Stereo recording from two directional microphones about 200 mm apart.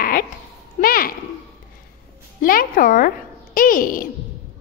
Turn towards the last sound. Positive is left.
turn(degrees=45)  # may be behind; listen again after turning